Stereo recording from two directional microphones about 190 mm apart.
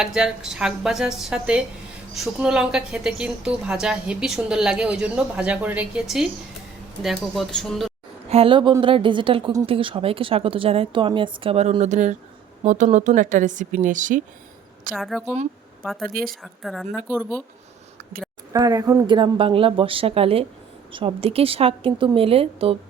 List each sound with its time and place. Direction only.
0.0 s a woman's voice: 5° right (ahead or behind)
8.3 s a woman's voice: 30° right (ahead or behind)
14.9 s a woman's voice: centre (ahead or behind)
16.0 s speech: 50° right (ahead or behind)
16.3 s a woman's voice: centre (ahead or behind)
18.5 s a woman's voice: 20° right (ahead or behind)